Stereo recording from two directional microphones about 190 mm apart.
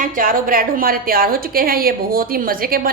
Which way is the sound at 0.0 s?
45° right (ahead or behind).